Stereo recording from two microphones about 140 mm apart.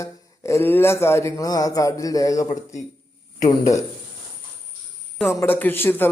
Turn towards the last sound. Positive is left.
turn(degrees=15)  # may be behind; listen again after turning